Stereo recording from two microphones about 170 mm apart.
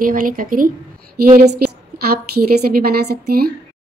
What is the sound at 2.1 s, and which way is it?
A woman's voice, 65° right (ahead or behind).